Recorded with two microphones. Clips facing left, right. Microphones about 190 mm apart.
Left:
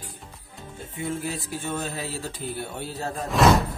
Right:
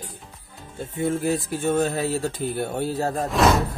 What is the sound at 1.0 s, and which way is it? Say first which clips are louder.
Speech: right 7 dB; 45° right (ahead or behind).